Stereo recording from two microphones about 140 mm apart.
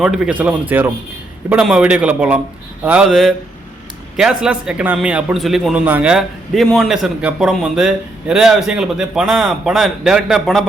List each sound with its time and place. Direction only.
0.0 s a man's voice: 5° right (ahead or behind)